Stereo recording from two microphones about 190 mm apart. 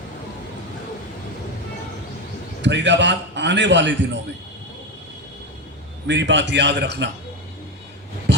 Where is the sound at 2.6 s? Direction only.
70° right (ahead or behind).